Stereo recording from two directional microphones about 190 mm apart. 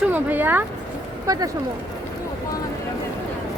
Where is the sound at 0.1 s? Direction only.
10° right (ahead or behind).